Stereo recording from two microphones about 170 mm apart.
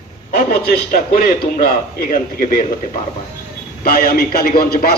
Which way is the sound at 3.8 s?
60° left (ahead or behind).